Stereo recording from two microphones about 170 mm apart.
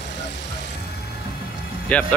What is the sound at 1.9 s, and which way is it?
Speech, 10° left (ahead or behind).